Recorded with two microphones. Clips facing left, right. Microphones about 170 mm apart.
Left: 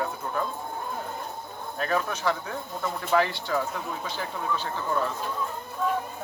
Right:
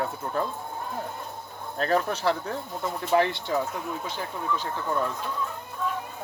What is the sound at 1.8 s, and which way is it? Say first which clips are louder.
Speech: right 3 dB; 35° right (ahead or behind).